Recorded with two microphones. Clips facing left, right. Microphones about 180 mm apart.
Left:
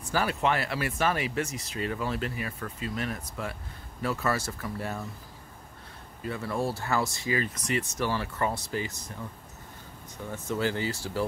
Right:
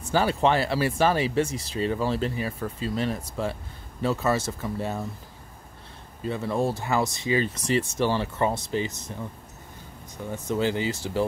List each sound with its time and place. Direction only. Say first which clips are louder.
0.1 s speech: right 5 dB; 30° right (ahead or behind)
6.2 s speech: right 4 dB; 20° right (ahead or behind)
10.3 s speech: right 4 dB; 20° right (ahead or behind)